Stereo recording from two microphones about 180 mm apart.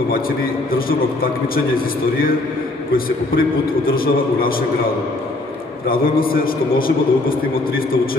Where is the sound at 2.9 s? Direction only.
55° left (ahead or behind).